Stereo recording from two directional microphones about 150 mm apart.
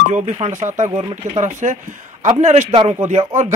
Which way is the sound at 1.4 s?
55° right (ahead or behind).